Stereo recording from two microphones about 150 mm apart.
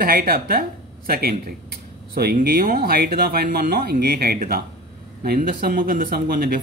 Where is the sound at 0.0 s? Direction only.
85° right.